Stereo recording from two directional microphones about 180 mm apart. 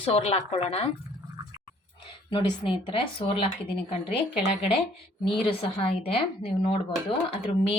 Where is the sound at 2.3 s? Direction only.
30° left (ahead or behind).